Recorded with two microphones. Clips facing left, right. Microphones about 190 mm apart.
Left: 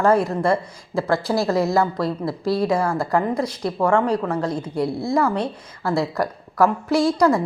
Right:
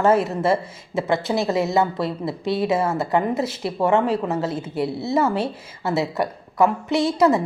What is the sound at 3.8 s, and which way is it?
Speech, 25° right (ahead or behind).